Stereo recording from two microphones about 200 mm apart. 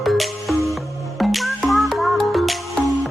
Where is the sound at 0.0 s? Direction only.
Centre (ahead or behind).